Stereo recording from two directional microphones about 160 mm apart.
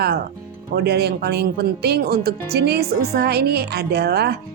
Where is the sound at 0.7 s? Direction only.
90° right.